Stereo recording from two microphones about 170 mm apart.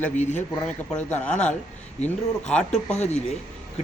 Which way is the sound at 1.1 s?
10° left (ahead or behind).